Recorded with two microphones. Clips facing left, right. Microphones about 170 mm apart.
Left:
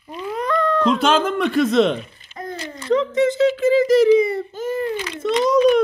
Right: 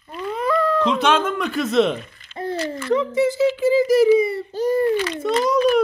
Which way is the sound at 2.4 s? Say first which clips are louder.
Right 6 dB; 30° right (ahead or behind).